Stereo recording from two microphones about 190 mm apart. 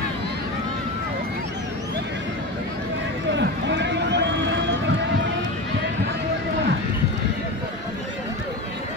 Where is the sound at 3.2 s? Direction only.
70° right (ahead or behind).